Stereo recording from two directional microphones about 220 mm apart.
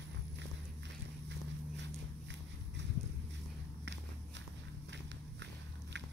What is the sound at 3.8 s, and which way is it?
Walk, 55° right (ahead or behind).